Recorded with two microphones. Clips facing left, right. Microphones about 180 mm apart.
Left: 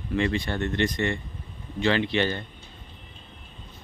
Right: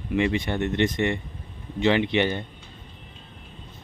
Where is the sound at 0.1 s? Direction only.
15° right (ahead or behind).